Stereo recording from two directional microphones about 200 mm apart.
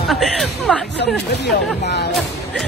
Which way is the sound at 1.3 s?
55° left (ahead or behind).